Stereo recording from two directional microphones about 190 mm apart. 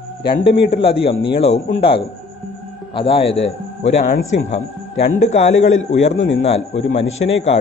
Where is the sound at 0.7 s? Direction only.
30° left (ahead or behind).